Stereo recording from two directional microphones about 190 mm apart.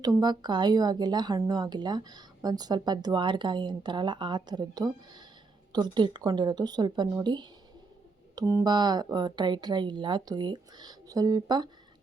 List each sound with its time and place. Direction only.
0.0 s a woman's voice: 20° right (ahead or behind)